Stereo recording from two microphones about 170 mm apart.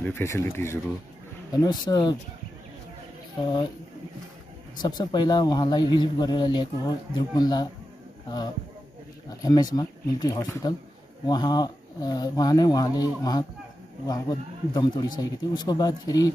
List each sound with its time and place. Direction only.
0.0 s a man's voice: 15° left (ahead or behind)
3.3 s a man's voice: 25° left (ahead or behind)
4.8 s a man's voice: 25° left (ahead or behind)
9.4 s a man's voice: 20° left (ahead or behind)